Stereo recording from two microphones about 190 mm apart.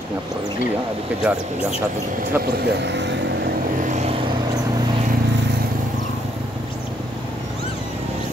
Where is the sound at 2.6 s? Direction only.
60° right (ahead or behind).